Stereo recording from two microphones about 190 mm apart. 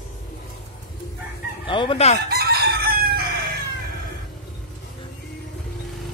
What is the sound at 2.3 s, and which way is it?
Chicken, 55° right (ahead or behind).